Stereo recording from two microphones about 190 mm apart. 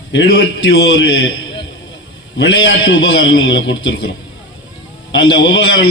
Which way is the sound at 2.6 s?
70° left (ahead or behind).